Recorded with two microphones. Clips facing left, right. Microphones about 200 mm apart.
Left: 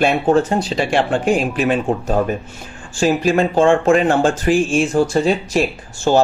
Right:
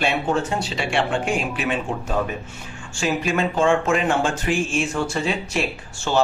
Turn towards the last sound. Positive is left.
turn(degrees=40)  # may be behind; listen again after turning